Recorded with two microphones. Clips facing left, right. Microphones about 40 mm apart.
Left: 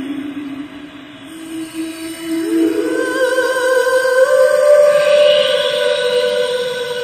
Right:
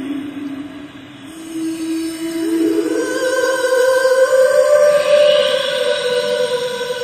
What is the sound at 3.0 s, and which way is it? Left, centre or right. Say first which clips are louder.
Music: left 2 dB; centre.